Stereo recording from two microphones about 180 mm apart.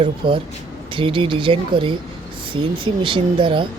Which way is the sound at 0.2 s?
25° right (ahead or behind).